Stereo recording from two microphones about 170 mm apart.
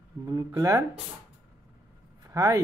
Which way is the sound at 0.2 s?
20° right (ahead or behind).